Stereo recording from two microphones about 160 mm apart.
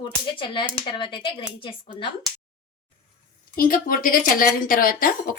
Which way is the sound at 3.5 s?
60° left (ahead or behind).